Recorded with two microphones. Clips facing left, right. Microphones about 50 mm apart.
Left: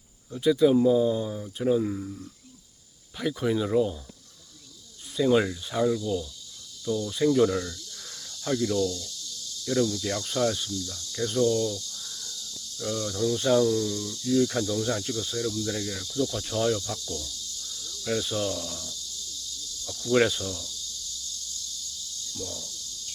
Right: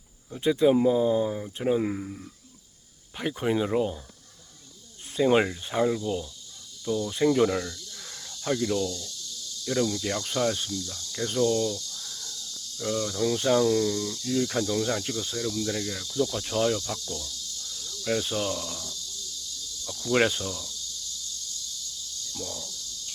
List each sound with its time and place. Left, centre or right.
0.3 s speech: right
1.8 s speech: right
3.2 s speech: right
5.1 s speech: right
7.7 s snake: centre
10.0 s speech: centre
11.4 s speech: right
11.9 s insect: centre
12.8 s speech: centre
13.6 s speech: right
14.2 s speech: centre